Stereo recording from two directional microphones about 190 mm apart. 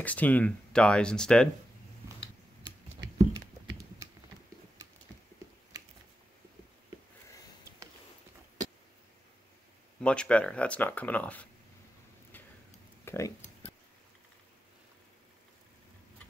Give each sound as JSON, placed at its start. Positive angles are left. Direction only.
{"t": 0.0, "sound": "speech", "side_deg": 10}
{"t": 2.6, "sound": "typing", "side_deg": -20}
{"t": 9.9, "sound": "speech", "side_deg": 5}
{"t": 13.0, "sound": "a sound", "side_deg": 15}